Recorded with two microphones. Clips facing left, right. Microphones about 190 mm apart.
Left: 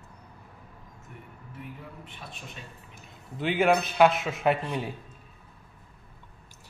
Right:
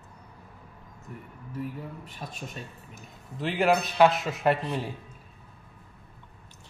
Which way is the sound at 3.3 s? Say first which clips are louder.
Left 1 dB; centre (ahead or behind).